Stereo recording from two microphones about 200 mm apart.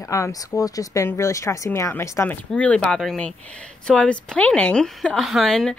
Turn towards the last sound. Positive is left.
turn(degrees=0)  # may be behind; listen again after turning